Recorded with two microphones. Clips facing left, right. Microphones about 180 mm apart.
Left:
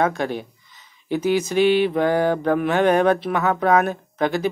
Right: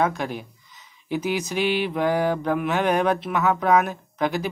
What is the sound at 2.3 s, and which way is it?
Mantra, 50° left (ahead or behind).